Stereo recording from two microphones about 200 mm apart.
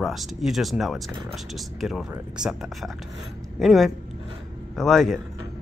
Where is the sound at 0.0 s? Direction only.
Centre (ahead or behind).